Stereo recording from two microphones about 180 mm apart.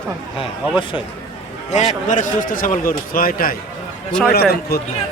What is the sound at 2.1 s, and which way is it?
A man's voice, 45° left (ahead or behind).